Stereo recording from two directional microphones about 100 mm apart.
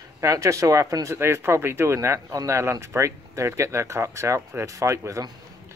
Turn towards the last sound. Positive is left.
turn(degrees=-30)  # may be behind; listen again after turning